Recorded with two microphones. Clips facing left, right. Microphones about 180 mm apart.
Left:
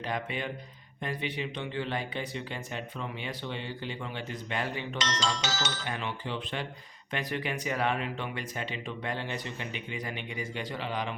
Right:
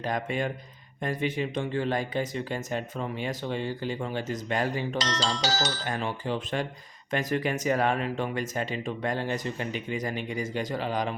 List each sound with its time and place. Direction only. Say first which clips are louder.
0.0 s speech: right 5 dB; 45° right (ahead or behind)